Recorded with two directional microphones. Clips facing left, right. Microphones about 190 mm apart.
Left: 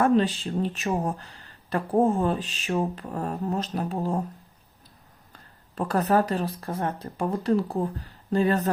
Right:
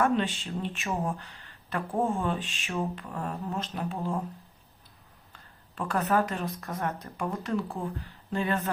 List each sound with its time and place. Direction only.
0.0 s speech: 35° left (ahead or behind)
5.3 s speech: 40° left (ahead or behind)